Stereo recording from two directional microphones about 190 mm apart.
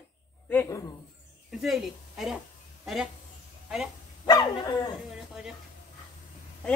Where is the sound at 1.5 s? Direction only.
Centre (ahead or behind).